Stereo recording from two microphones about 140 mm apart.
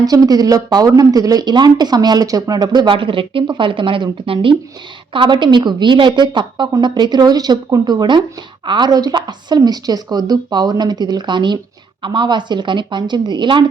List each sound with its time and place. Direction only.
0.0 s a woman's voice: 25° right (ahead or behind)